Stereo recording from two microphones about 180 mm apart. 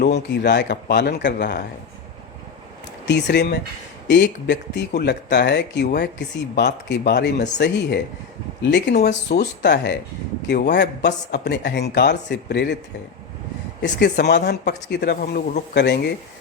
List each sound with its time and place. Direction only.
0.0 s speech: 70° left (ahead or behind)
3.1 s speech: 75° left (ahead or behind)
9.0 s speech: 65° left (ahead or behind)
13.8 s speech: 70° left (ahead or behind); by 15.6 s 50° left (ahead or behind)
15.7 s speech: 65° left (ahead or behind)